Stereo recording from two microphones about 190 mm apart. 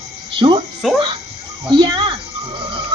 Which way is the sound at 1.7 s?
25° right (ahead or behind).